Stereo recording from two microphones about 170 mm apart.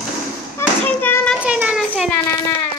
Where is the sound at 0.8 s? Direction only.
10° left (ahead or behind).